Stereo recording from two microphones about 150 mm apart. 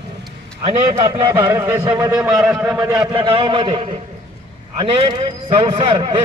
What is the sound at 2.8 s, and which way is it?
Speech, 25° right (ahead or behind).